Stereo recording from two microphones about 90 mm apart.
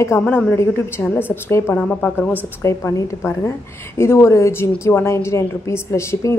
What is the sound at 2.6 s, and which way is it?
A woman's voice, 35° left (ahead or behind).